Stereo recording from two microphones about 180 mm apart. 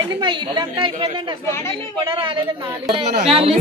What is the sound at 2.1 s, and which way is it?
A woman's voice, 30° right (ahead or behind).